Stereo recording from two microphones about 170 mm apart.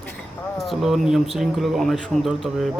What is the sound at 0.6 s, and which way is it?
Speech, centre (ahead or behind).